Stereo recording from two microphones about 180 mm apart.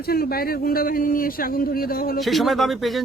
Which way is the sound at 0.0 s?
55° left (ahead or behind).